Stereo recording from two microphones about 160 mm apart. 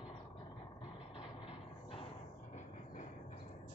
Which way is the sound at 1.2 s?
35° left (ahead or behind).